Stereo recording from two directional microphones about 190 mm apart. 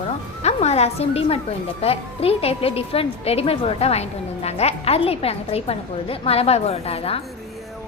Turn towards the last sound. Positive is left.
turn(degrees=30)  # may be behind; listen again after turning